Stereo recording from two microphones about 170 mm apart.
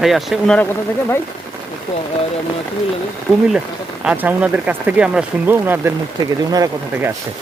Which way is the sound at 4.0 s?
10° right (ahead or behind).